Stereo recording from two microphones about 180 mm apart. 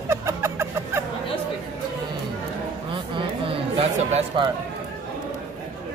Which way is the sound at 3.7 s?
30° right (ahead or behind).